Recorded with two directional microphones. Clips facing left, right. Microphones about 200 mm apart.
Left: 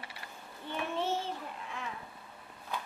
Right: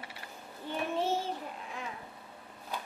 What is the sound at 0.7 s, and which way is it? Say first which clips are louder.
Child singing: right 2 dB; 40° right (ahead or behind).